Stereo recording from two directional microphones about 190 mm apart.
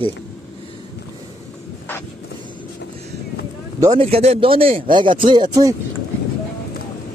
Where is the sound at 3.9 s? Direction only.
35° right (ahead or behind).